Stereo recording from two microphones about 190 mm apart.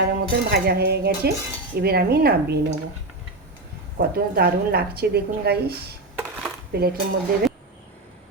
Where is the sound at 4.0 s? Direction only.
55° right (ahead or behind).